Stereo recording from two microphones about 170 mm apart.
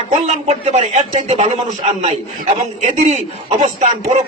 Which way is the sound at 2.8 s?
45° right (ahead or behind).